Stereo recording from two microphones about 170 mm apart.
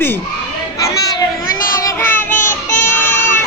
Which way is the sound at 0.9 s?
20° left (ahead or behind).